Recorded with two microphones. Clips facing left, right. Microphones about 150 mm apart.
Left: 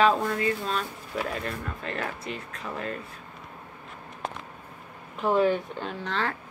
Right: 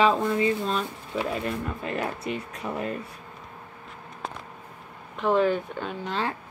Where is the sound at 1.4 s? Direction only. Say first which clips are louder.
Right 4 dB; 15° right (ahead or behind).